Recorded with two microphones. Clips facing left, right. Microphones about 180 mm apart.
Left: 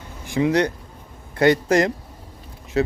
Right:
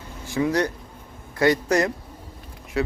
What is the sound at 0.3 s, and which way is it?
Speech, 20° left (ahead or behind).